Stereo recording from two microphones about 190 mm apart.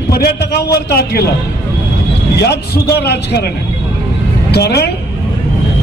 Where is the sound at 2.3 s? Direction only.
55° left (ahead or behind).